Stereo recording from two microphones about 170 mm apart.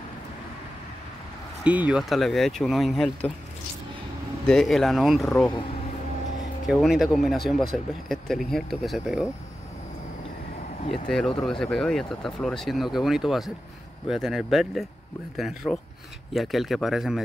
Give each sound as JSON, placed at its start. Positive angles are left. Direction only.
{"t": 1.6, "sound": "speech", "side_deg": -10}
{"t": 4.5, "sound": "speech", "side_deg": 0}
{"t": 6.7, "sound": "speech", "side_deg": 0}
{"t": 11.1, "sound": "speech", "side_deg": 5}